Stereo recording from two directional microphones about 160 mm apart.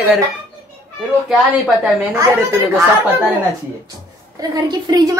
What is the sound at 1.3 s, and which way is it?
Speech, centre (ahead or behind).